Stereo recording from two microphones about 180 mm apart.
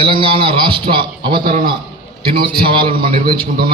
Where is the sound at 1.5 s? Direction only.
45° right (ahead or behind).